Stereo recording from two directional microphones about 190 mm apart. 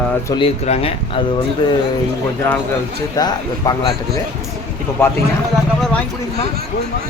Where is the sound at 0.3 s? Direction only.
25° left (ahead or behind).